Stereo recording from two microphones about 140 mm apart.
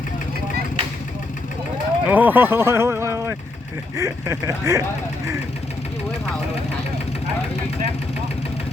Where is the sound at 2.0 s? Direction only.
10° right (ahead or behind).